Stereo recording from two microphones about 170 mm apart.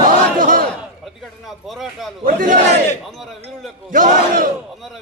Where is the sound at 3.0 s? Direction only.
Centre (ahead or behind).